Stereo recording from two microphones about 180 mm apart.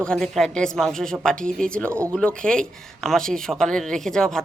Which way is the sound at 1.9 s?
15° right (ahead or behind).